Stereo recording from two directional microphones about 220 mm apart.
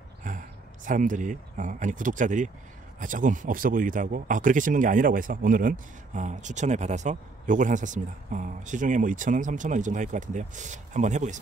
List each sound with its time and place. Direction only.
0.2 s speech: 35° right (ahead or behind)